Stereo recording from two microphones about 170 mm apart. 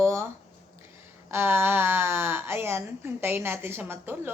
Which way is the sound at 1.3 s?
15° right (ahead or behind).